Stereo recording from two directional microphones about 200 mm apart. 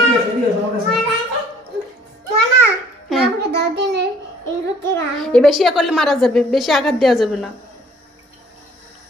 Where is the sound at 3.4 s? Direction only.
55° right (ahead or behind).